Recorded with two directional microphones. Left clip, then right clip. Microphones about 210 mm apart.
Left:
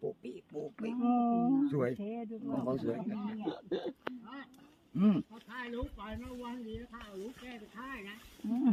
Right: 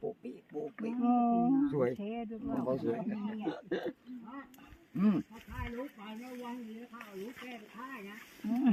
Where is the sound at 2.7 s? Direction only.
50° left (ahead or behind).